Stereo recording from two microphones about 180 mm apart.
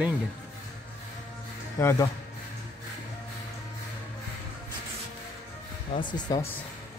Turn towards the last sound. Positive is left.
turn(degrees=25)  # may be behind; listen again after turning